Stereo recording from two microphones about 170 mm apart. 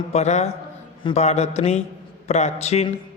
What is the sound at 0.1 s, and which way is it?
Speech, 40° left (ahead or behind).